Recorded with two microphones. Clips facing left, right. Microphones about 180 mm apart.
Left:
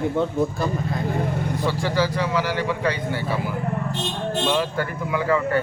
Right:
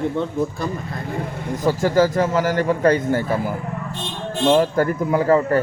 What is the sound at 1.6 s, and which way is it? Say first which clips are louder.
Speech: right 7 dB; 45° right (ahead or behind).